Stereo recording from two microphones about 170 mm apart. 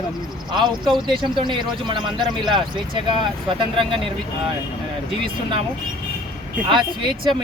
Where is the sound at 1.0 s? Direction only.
30° right (ahead or behind).